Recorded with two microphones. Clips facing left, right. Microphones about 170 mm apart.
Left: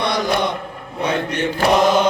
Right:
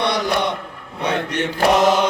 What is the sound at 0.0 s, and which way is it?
Mantra, 65° right (ahead or behind).